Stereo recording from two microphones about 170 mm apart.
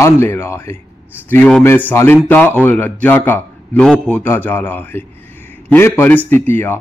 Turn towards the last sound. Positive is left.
turn(degrees=15)  # may be behind; listen again after turning